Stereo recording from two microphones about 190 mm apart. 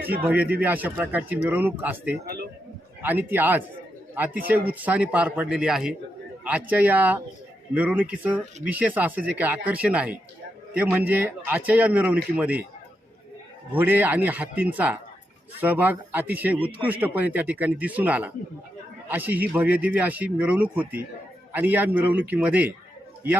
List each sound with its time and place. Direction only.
0.0 s speech: 10° right (ahead or behind)
2.2 s a man's voice: 55° right (ahead or behind)
3.0 s speech: 10° right (ahead or behind)
13.7 s speech: 10° right (ahead or behind)